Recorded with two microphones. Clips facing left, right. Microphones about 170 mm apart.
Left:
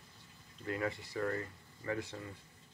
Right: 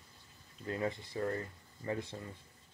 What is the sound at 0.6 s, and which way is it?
Speech, 25° right (ahead or behind).